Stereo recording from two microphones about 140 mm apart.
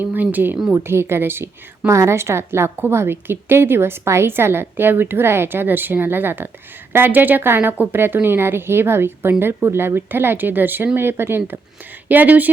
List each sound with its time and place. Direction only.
0.0 s a woman's voice: 15° right (ahead or behind)